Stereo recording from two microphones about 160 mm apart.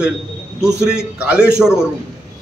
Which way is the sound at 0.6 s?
5° right (ahead or behind).